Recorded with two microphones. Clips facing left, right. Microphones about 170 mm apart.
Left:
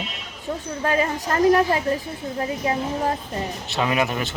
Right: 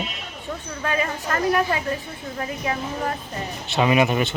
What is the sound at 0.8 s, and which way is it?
A woman's voice, 35° left (ahead or behind).